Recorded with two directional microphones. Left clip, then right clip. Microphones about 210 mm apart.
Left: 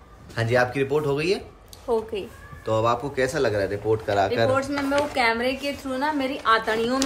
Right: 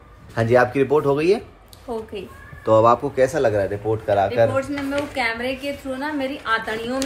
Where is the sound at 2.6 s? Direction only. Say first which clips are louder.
Right 8 dB; 20° right (ahead or behind); by 4.5 s 5° right (ahead or behind).